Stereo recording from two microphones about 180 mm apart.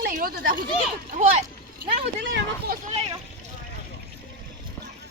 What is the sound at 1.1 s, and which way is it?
Speech, 40° right (ahead or behind).